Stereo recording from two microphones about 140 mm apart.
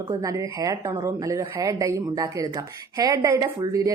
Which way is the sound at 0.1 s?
25° right (ahead or behind).